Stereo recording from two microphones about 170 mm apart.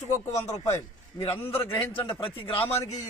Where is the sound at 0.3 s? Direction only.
20° left (ahead or behind).